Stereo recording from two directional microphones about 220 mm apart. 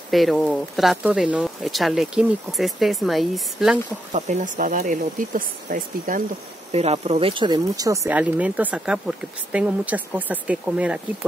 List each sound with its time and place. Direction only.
0.1 s speech: centre (ahead or behind)
4.1 s speech: 35° right (ahead or behind); by 11.0 s 5° right (ahead or behind)